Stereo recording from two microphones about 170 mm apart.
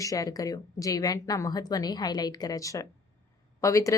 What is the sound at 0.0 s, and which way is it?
A woman's voice, 20° left (ahead or behind).